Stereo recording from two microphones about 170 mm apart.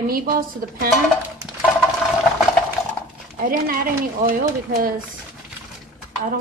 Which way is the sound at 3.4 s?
55° right (ahead or behind).